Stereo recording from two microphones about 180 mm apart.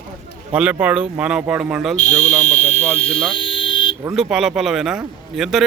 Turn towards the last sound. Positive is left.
turn(degrees=0)  # may be behind; listen again after turning